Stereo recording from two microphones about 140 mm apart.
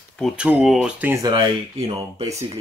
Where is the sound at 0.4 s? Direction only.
5° right (ahead or behind).